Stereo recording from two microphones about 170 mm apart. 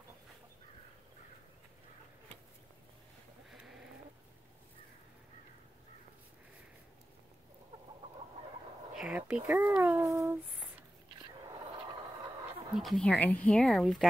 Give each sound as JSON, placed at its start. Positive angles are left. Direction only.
{"t": 3.4, "sound": "sheep", "side_deg": 0}
{"t": 8.9, "sound": "speech", "side_deg": -5}
{"t": 9.5, "sound": "speech", "side_deg": -20}
{"t": 12.7, "sound": "speech", "side_deg": 0}